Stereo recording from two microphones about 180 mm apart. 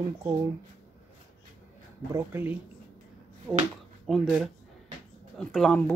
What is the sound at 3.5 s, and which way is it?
Speech, centre (ahead or behind).